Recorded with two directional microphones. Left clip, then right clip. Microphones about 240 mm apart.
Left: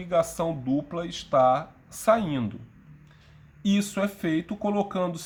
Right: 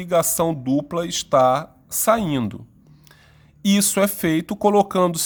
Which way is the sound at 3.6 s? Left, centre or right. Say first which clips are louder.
Right 8 dB; right.